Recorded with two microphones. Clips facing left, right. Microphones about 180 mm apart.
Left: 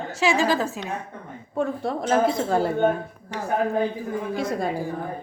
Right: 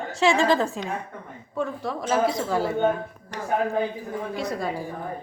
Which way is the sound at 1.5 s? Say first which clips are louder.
Left 3 dB; 55° left (ahead or behind).